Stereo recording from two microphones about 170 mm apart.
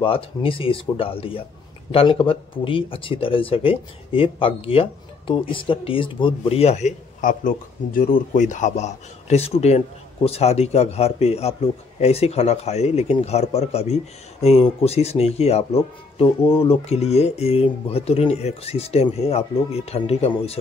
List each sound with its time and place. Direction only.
0.0 s speech: 30° left (ahead or behind)